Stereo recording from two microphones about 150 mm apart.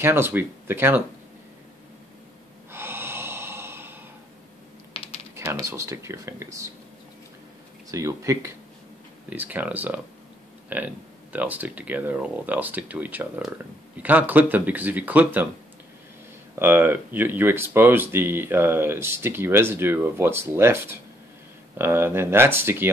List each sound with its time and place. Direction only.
0.0 s speech: 15° right (ahead or behind)
2.7 s gasp: 15° right (ahead or behind)
4.9 s typing: 40° left (ahead or behind)
5.3 s speech: 20° right (ahead or behind)
7.9 s speech: 20° right (ahead or behind)
16.5 s speech: 15° right (ahead or behind)